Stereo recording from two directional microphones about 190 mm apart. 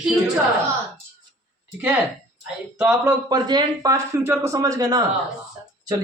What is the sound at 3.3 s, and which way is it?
Speech, 20° right (ahead or behind).